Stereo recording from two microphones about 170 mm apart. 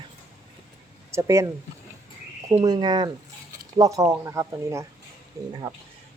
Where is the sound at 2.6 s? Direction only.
25° right (ahead or behind).